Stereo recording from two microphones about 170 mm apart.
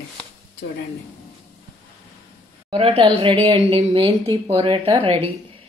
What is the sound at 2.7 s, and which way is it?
A woman's voice, 35° right (ahead or behind).